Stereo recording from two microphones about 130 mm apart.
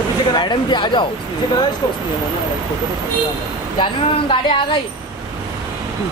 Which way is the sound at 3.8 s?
40° left (ahead or behind).